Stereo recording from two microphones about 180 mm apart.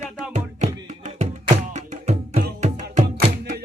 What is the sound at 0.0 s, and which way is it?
Music, 40° right (ahead or behind).